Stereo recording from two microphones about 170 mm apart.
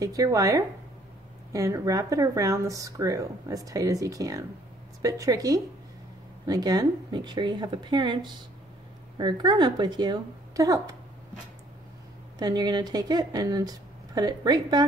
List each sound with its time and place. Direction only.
0.0 s speech: 20° right (ahead or behind)
12.4 s speech: 25° right (ahead or behind)